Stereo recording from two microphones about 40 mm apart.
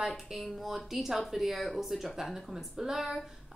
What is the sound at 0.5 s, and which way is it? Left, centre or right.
A woman's voice, centre.